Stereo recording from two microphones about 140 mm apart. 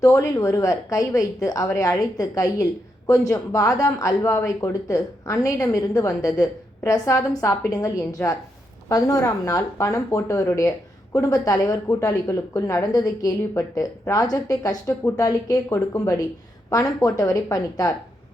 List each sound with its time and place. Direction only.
0.0 s speech: 25° left (ahead or behind)